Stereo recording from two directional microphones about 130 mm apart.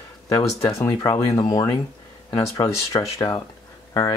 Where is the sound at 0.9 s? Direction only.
30° left (ahead or behind).